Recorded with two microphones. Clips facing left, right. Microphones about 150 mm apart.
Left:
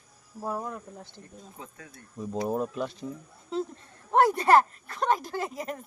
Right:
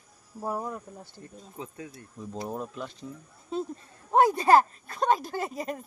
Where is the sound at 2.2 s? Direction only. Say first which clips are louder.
Left 6 dB; 15° left (ahead or behind).